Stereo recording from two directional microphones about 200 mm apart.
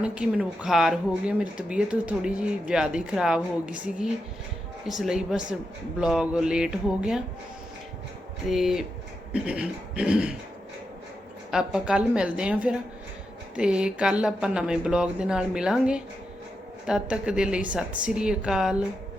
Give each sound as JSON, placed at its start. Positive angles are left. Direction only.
{"t": 0.0, "sound": "speech", "side_deg": -5}
{"t": 8.4, "sound": "speech", "side_deg": 0}
{"t": 11.5, "sound": "speech", "side_deg": -5}